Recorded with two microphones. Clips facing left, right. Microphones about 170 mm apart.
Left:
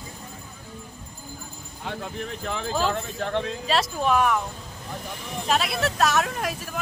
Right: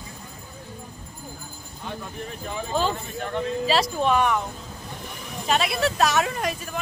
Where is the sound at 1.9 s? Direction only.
90° left.